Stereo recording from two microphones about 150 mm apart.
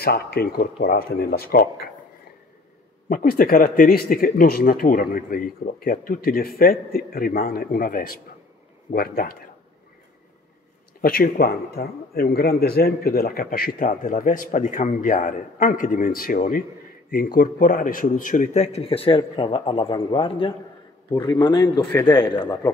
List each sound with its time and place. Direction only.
0.0 s speech: 90° left
3.1 s speech: 70° left (ahead or behind)
8.9 s speech: 80° left
11.0 s speech: 85° left; by 22.6 s 30° left (ahead or behind)